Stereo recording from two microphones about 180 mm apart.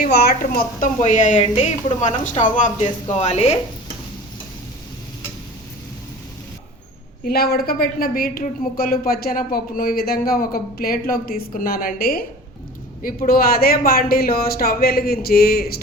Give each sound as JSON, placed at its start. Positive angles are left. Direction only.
{"t": 0.0, "sound": "a woman's voice", "side_deg": 65}
{"t": 7.3, "sound": "a woman's voice", "side_deg": 60}